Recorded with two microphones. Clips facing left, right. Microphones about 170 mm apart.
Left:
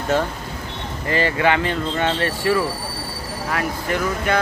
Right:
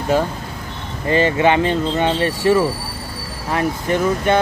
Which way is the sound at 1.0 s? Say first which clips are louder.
Right 4 dB; 20° right (ahead or behind).